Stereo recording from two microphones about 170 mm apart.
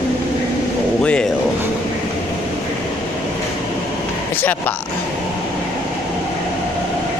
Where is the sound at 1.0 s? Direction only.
5° left (ahead or behind).